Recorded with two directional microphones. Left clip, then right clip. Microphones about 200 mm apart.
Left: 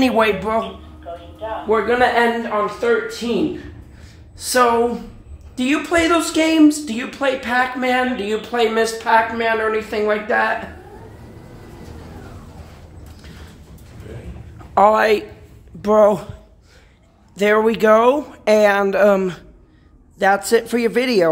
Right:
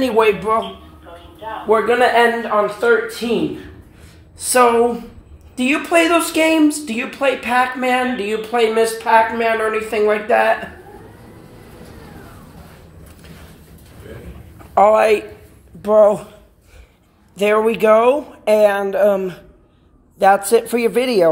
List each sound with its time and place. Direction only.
0.0 s speech: 15° left (ahead or behind)
1.7 s speech: centre (ahead or behind)
4.4 s speech: centre (ahead or behind)
14.7 s a woman's voice: 15° left (ahead or behind)
17.4 s speech: 15° left (ahead or behind)
20.2 s speech: 10° left (ahead or behind)